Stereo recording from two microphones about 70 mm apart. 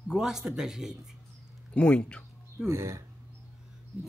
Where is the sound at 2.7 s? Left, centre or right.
Right.